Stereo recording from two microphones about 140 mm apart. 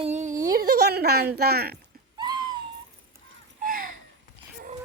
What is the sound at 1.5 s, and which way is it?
Speech, 90° right.